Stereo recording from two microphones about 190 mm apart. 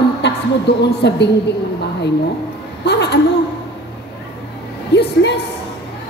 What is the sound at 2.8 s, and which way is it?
Speech, 60° left (ahead or behind).